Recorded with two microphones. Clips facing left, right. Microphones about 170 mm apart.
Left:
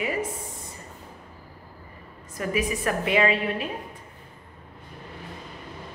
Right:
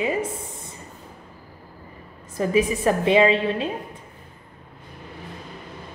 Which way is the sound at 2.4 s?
25° right (ahead or behind).